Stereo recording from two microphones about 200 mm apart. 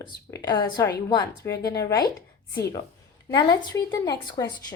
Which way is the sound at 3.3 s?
20° left (ahead or behind).